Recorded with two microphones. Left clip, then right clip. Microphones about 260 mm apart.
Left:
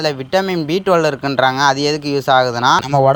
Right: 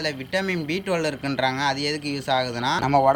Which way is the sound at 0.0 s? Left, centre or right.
Centre.